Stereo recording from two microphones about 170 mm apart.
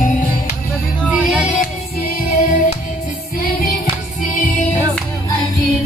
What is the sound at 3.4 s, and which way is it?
Music, 55° left (ahead or behind).